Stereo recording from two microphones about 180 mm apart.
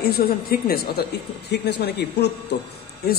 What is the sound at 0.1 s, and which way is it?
A man's voice, 60° left (ahead or behind).